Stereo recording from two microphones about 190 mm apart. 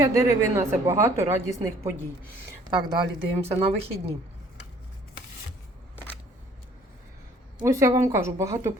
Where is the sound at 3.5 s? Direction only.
30° right (ahead or behind).